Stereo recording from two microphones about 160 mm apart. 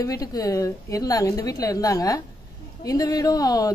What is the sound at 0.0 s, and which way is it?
A woman's voice, 20° left (ahead or behind).